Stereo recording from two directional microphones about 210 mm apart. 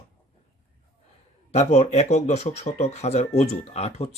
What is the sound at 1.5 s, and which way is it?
Speech, 30° left (ahead or behind).